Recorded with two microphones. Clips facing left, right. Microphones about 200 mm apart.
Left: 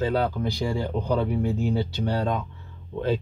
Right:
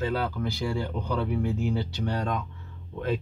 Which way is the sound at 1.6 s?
30° left (ahead or behind).